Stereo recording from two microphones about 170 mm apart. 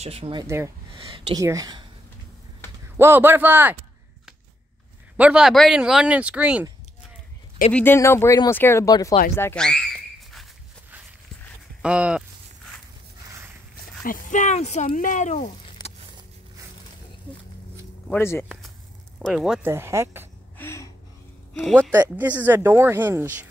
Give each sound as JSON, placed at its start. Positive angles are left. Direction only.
{"t": 0.0, "sound": "speech", "side_deg": -35}
{"t": 1.4, "sound": "speech", "side_deg": -20}
{"t": 3.0, "sound": "speech", "side_deg": -15}
{"t": 5.1, "sound": "speech", "side_deg": -5}
{"t": 7.7, "sound": "speech", "side_deg": 15}
{"t": 9.6, "sound": "speech", "side_deg": 5}
{"t": 11.8, "sound": "speech", "side_deg": -5}
{"t": 14.0, "sound": "speech", "side_deg": 50}
{"t": 18.1, "sound": "speech", "side_deg": 15}
{"t": 19.1, "sound": "speech", "side_deg": 0}
{"t": 19.6, "sound": "speech", "side_deg": -15}
{"t": 20.5, "sound": "a sound", "side_deg": 15}
{"t": 21.9, "sound": "speech", "side_deg": -10}